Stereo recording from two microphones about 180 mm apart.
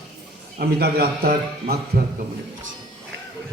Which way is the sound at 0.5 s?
60° right (ahead or behind).